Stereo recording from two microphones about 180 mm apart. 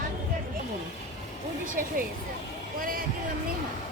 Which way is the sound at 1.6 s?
50° right (ahead or behind).